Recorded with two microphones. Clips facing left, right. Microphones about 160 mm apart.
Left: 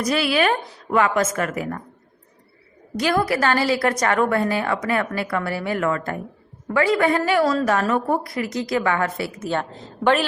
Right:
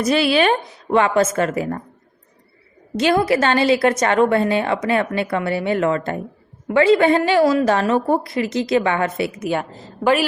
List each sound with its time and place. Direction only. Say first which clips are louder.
0.0 s a woman's voice: right 4 dB; 25° right (ahead or behind)
3.0 s a woman's voice: right 4 dB; 25° right (ahead or behind); by 10.2 s 5° right (ahead or behind)